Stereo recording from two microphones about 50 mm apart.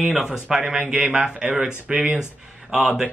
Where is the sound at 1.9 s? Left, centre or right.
Right.